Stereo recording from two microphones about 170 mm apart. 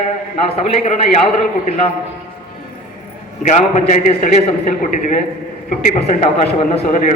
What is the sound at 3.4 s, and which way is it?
A man's voice, 45° left (ahead or behind).